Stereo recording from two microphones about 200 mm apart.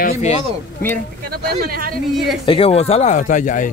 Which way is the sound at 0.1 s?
30° left (ahead or behind).